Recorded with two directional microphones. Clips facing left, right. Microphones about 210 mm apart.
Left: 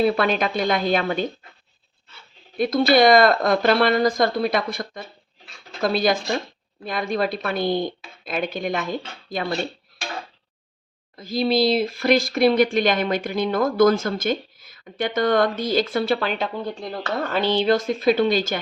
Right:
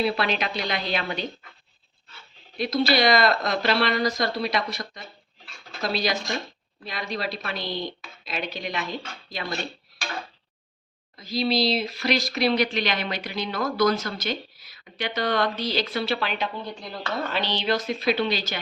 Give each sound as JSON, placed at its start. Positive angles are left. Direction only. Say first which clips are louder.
{"t": 0.0, "sound": "speech", "louder": "left 5 dB", "side_deg": 50}
{"t": 2.6, "sound": "speech", "louder": "left 6 dB", "side_deg": 50}
{"t": 11.2, "sound": "speech", "louder": "left 4 dB", "side_deg": 50}